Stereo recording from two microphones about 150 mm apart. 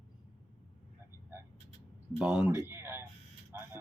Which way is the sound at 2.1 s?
5° right (ahead or behind).